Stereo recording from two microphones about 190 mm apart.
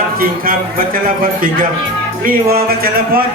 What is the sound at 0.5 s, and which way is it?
Speech, 50° right (ahead or behind).